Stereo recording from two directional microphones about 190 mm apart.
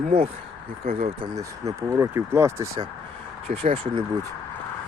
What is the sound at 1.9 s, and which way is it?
Speech, 15° right (ahead or behind).